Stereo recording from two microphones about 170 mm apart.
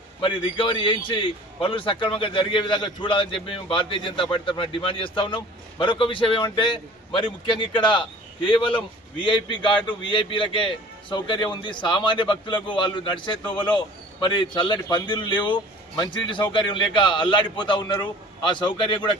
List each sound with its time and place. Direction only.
0.2 s a man's voice: 30° left (ahead or behind)